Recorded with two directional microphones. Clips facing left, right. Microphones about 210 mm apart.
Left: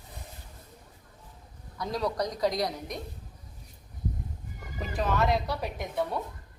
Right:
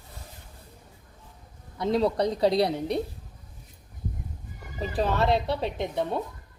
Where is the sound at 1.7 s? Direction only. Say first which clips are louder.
Right 6 dB; 25° right (ahead or behind).